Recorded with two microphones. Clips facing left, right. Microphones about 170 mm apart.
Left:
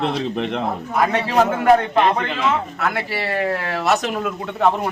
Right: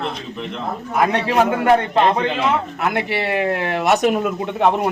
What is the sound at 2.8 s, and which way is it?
Speech, 20° right (ahead or behind).